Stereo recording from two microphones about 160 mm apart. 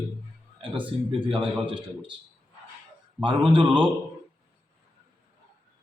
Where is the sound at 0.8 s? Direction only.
35° right (ahead or behind).